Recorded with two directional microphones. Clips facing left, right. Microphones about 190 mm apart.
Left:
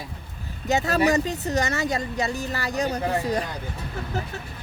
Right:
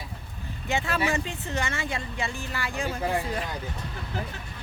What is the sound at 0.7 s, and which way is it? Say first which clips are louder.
Speech: left 6 dB; 40° left (ahead or behind).